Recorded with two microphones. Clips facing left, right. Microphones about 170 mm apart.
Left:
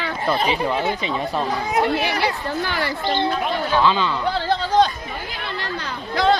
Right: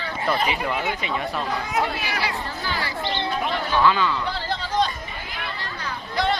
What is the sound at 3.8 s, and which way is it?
Speech, 25° left (ahead or behind).